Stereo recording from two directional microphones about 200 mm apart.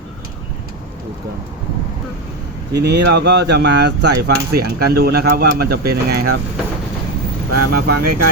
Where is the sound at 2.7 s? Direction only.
55° right (ahead or behind).